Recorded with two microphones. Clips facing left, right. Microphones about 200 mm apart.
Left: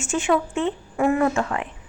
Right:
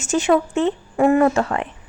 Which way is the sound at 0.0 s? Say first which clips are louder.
Right 4 dB; 40° right (ahead or behind).